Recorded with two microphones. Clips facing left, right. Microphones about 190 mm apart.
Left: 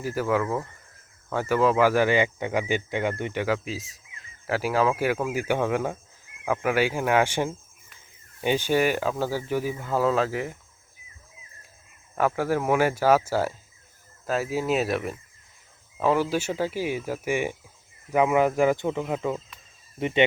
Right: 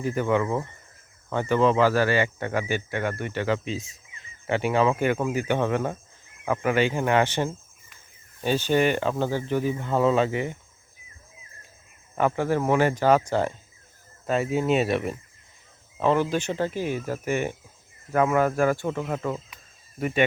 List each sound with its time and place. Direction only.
0.0 s speech: 5° left (ahead or behind)
3.4 s speech: 5° left (ahead or behind)
12.1 s speech: 5° left (ahead or behind)
20.0 s speech: 25° left (ahead or behind)